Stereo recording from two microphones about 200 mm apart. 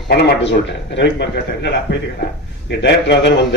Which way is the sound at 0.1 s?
55° left (ahead or behind).